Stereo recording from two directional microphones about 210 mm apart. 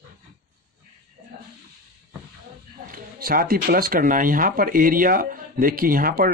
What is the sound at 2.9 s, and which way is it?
Speech, 45° right (ahead or behind).